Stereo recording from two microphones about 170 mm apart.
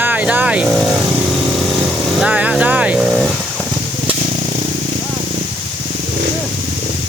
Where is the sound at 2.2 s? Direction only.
5° right (ahead or behind).